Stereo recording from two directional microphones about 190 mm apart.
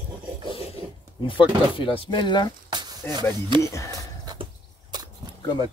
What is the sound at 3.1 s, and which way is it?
Speech, 25° right (ahead or behind).